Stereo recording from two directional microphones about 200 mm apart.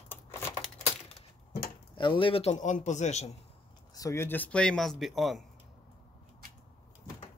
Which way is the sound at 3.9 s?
15° left (ahead or behind).